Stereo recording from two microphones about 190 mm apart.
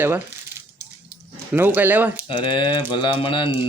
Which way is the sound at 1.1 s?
10° right (ahead or behind).